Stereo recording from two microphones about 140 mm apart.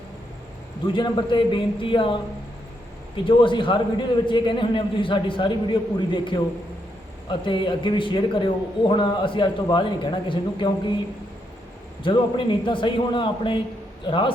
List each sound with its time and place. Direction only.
0.9 s a man's voice: 35° left (ahead or behind)
3.2 s a man's voice: 35° left (ahead or behind)
12.0 s a man's voice: 35° left (ahead or behind)